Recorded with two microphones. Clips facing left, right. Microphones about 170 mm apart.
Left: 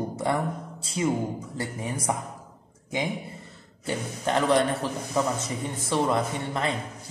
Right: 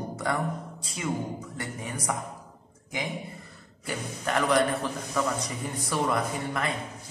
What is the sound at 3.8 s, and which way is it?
A woman's voice, 25° left (ahead or behind).